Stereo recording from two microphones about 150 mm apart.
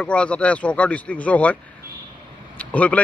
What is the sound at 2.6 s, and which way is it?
Speech, 10° left (ahead or behind).